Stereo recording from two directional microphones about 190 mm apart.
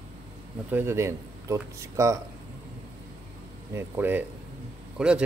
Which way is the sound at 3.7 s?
10° right (ahead or behind).